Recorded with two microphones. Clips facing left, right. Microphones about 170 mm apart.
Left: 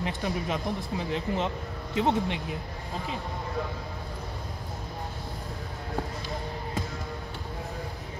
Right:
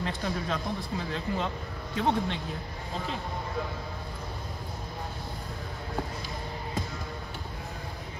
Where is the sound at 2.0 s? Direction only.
15° left (ahead or behind).